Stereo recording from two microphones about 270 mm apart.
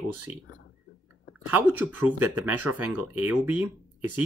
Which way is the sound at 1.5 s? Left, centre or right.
Centre.